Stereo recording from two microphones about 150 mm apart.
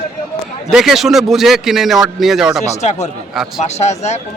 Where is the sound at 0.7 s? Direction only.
Centre (ahead or behind).